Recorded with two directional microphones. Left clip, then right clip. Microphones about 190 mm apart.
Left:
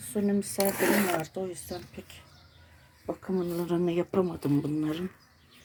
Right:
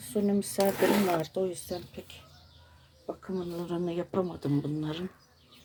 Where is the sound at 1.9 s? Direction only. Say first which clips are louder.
Right 1 dB; centre (ahead or behind).